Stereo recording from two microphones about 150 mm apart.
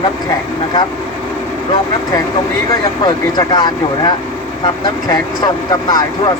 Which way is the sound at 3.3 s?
30° left (ahead or behind).